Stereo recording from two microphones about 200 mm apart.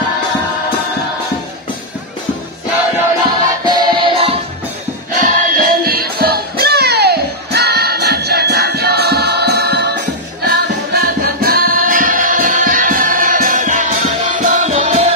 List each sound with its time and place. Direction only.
3.6 s music: 20° right (ahead or behind)
5.1 s music: 45° right (ahead or behind)